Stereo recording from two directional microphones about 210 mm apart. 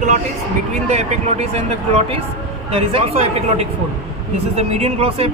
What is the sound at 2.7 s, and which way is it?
Speech, 25° right (ahead or behind).